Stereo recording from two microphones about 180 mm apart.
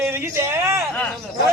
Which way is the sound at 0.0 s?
15° right (ahead or behind).